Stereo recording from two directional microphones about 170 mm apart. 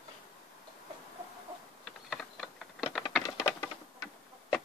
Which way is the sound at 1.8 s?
Centre (ahead or behind).